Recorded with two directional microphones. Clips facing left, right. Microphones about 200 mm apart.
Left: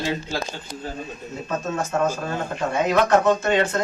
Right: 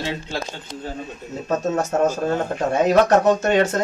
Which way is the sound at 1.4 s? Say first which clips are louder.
Right 5 dB; 40° right (ahead or behind).